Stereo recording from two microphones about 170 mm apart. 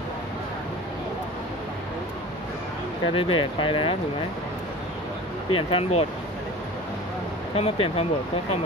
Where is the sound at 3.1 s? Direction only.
30° left (ahead or behind).